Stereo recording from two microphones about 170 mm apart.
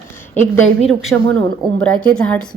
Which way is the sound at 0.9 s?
Centre (ahead or behind).